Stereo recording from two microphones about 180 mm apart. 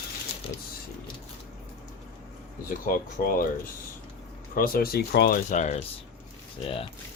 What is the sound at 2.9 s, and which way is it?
Speech, 55° left (ahead or behind).